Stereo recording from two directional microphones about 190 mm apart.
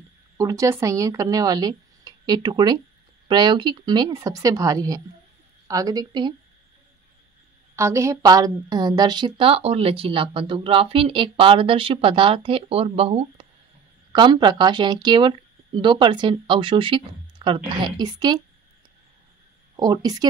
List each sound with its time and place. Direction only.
0.4 s a woman's voice: 15° right (ahead or behind)
7.7 s a woman's voice: 15° right (ahead or behind)
19.8 s a woman's voice: 20° right (ahead or behind)